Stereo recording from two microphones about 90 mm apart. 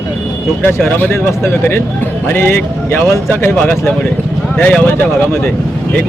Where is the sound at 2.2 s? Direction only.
25° left (ahead or behind).